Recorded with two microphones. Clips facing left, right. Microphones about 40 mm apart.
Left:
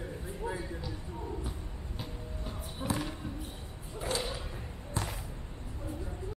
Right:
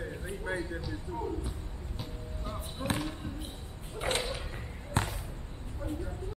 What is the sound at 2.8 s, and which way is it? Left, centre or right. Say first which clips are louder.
Speech: right 1 dB; right.